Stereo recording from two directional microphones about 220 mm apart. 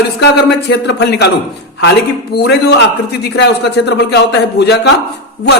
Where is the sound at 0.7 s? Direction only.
50° left (ahead or behind).